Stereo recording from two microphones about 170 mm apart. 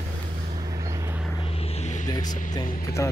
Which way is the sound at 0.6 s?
20° right (ahead or behind).